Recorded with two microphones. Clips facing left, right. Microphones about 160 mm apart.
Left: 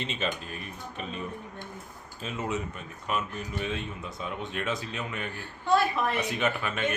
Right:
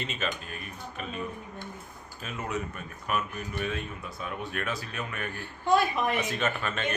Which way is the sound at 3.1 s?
25° left (ahead or behind).